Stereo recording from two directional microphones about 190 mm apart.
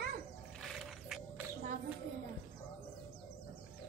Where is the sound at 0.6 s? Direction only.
Centre (ahead or behind).